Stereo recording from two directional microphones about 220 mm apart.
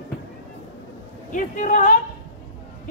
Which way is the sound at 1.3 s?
35° left (ahead or behind).